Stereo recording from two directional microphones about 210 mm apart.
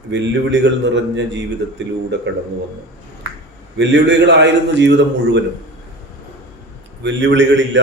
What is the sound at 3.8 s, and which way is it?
A man's voice, 55° right (ahead or behind).